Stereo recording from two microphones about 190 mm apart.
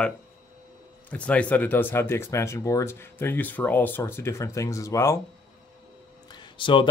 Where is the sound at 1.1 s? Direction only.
5° left (ahead or behind).